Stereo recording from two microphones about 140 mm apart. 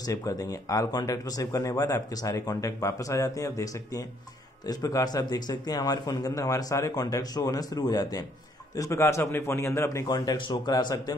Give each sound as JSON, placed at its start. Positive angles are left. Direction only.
{"t": 0.0, "sound": "speech", "side_deg": 25}